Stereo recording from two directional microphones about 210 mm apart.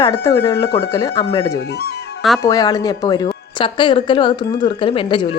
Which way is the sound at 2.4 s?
15° left (ahead or behind).